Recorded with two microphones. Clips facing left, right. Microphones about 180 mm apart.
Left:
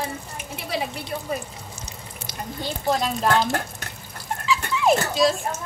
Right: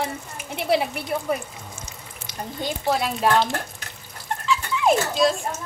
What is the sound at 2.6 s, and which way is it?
Speech, 5° right (ahead or behind).